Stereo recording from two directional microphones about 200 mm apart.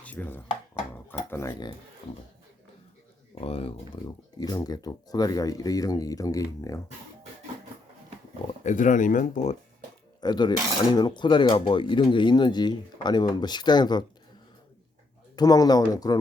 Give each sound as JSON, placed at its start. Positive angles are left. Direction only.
{"t": 0.0, "sound": "dishes", "side_deg": 10}
{"t": 2.0, "sound": "speech", "side_deg": 25}
{"t": 3.4, "sound": "speech", "side_deg": 30}
{"t": 4.4, "sound": "speech", "side_deg": 20}
{"t": 8.6, "sound": "speech", "side_deg": 40}
{"t": 10.2, "sound": "cutlery", "side_deg": 20}
{"t": 10.9, "sound": "speech", "side_deg": 20}
{"t": 15.4, "sound": "speech", "side_deg": 20}